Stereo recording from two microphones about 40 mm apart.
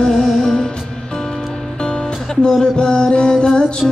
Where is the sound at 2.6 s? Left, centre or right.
Centre.